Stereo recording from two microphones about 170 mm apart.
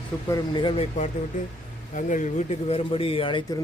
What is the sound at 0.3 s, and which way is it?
Speech, 25° left (ahead or behind).